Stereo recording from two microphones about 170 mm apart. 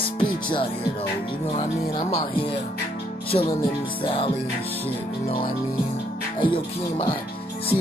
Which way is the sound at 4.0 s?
35° left (ahead or behind).